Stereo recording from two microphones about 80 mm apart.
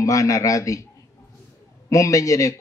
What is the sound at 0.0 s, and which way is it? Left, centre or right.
Speech, left.